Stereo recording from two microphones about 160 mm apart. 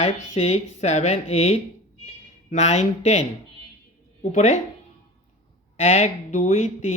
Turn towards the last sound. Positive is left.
turn(degrees=45)  # may be behind; listen again after turning